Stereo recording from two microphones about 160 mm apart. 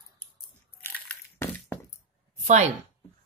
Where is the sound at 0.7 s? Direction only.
10° left (ahead or behind).